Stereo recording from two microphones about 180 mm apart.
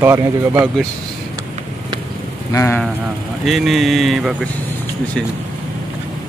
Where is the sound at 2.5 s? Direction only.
15° left (ahead or behind).